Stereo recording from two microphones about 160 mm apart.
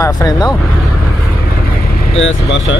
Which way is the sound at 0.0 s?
20° left (ahead or behind).